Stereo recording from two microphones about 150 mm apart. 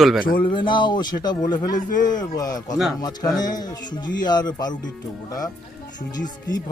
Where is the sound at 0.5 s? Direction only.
30° left (ahead or behind).